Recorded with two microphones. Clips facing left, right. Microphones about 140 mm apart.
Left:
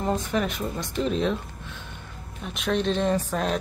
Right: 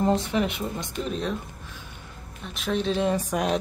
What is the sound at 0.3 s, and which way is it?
Speech, 20° right (ahead or behind).